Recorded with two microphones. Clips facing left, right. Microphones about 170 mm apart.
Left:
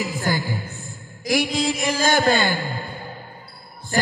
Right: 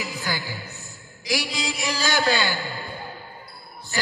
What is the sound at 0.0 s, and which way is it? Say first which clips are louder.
A man's voice: left 6 dB; 50° left (ahead or behind).